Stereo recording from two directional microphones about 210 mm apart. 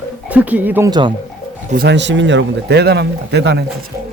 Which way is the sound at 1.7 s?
50° right (ahead or behind).